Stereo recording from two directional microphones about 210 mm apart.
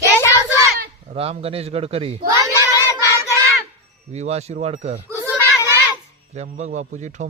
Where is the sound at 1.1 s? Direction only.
30° right (ahead or behind).